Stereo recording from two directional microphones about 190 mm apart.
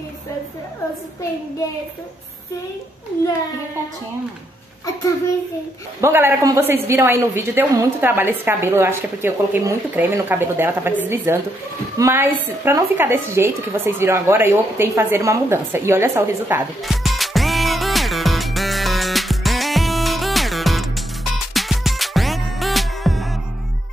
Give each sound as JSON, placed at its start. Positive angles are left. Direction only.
{"t": 5.9, "sound": "a woman's voice", "side_deg": -15}
{"t": 16.8, "sound": "music", "side_deg": 0}